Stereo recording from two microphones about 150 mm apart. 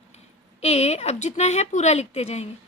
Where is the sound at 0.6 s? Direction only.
45° left (ahead or behind).